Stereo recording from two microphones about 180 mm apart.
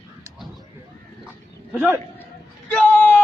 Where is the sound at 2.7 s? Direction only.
5° left (ahead or behind).